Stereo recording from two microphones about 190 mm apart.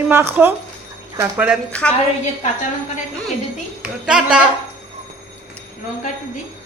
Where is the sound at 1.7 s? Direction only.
5° left (ahead or behind).